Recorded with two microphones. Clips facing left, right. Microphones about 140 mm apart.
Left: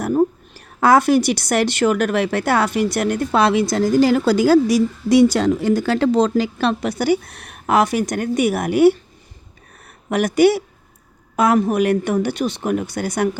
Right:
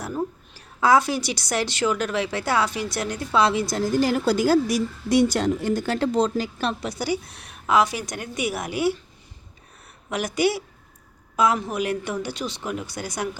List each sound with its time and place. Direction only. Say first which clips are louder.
0.0 s a woman's voice: left 11 dB; 55° left (ahead or behind)
9.8 s a sound: left 8 dB; 55° left (ahead or behind)
11.3 s a woman's voice: left 6 dB; 55° left (ahead or behind)